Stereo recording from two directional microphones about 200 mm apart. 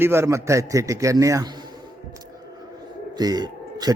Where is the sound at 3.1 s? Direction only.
20° right (ahead or behind).